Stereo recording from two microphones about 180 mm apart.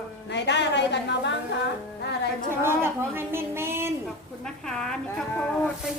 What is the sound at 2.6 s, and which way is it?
Speech, 15° right (ahead or behind).